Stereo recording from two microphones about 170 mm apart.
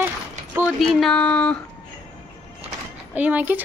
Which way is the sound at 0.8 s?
Centre (ahead or behind).